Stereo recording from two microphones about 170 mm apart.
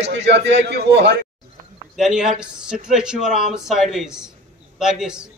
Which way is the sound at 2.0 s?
5° right (ahead or behind).